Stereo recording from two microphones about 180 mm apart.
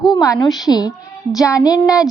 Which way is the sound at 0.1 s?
20° left (ahead or behind).